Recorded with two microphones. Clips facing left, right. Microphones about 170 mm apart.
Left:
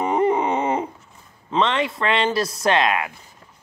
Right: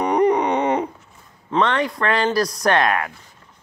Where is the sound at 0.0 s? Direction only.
25° left (ahead or behind).